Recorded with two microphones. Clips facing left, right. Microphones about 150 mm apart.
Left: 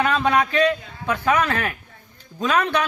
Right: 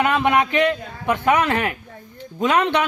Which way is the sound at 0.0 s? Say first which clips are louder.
Right 1 dB; 20° right (ahead or behind).